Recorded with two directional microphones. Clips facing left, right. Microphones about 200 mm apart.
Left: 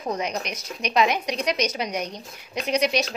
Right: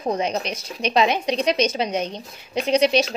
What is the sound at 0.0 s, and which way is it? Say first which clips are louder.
A woman's voice: right 4 dB; 30° right (ahead or behind).